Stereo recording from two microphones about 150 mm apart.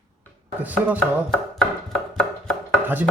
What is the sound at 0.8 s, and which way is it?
Chopping, 15° right (ahead or behind).